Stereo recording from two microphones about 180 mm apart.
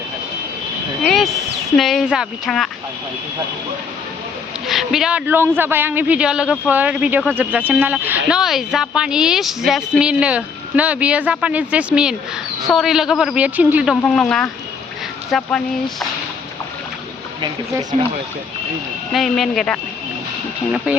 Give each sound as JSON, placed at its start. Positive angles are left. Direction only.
{"t": 1.0, "sound": "a sound", "side_deg": 0}
{"t": 1.7, "sound": "a man's voice", "side_deg": 0}
{"t": 4.6, "sound": "a man's voice", "side_deg": 0}
{"t": 13.9, "sound": "a man's voice", "side_deg": 5}
{"t": 17.4, "sound": "speech", "side_deg": -20}
{"t": 19.1, "sound": "a man's voice", "side_deg": 0}